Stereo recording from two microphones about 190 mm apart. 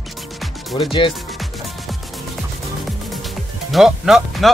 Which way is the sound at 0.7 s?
25° left (ahead or behind).